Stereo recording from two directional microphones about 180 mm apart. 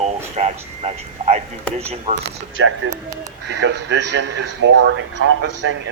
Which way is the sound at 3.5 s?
75° right (ahead or behind).